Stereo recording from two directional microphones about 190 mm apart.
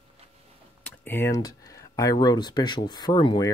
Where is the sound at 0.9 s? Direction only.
10° left (ahead or behind).